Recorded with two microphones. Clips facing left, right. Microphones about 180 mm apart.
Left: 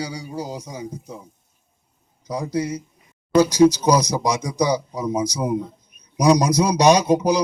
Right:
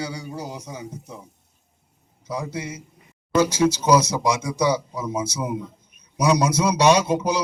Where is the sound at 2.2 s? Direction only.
35° left (ahead or behind).